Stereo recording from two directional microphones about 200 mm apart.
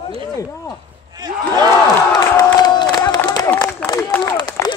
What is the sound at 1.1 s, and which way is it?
Crowd, 20° right (ahead or behind).